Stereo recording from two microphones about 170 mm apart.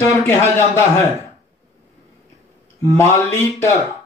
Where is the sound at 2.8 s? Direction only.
15° left (ahead or behind).